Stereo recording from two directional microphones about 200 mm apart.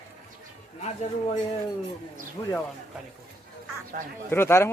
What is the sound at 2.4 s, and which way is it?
Speech, 25° left (ahead or behind).